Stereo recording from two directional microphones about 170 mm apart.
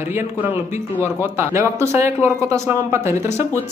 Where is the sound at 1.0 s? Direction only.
15° right (ahead or behind).